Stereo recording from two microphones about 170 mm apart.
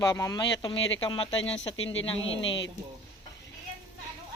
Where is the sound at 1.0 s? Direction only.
30° left (ahead or behind).